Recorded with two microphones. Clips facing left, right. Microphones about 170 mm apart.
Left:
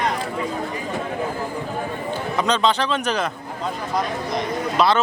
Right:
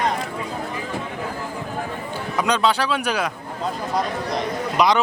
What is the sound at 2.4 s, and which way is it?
Speech, 10° right (ahead or behind).